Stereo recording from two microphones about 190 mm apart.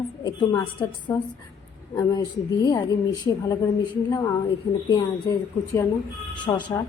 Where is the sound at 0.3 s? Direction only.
15° left (ahead or behind).